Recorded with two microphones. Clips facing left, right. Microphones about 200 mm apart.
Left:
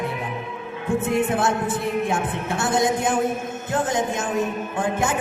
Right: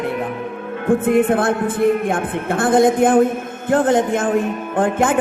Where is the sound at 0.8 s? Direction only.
55° right (ahead or behind).